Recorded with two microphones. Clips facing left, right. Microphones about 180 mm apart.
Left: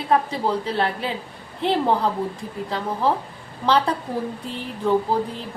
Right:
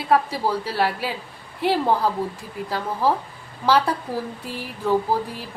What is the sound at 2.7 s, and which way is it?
Speech, 5° right (ahead or behind).